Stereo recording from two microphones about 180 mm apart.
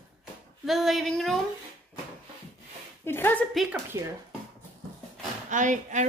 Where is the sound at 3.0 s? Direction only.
10° left (ahead or behind).